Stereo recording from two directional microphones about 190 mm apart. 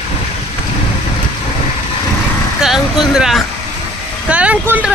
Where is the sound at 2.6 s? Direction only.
Centre (ahead or behind).